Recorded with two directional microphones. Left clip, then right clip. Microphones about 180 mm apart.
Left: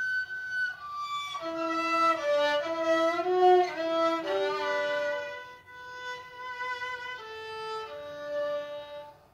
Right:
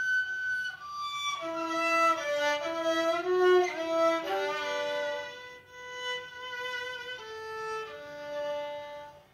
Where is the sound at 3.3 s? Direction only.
Centre (ahead or behind).